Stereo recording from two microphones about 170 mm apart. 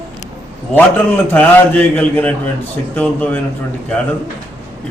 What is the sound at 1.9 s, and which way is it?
A man's voice, 10° left (ahead or behind).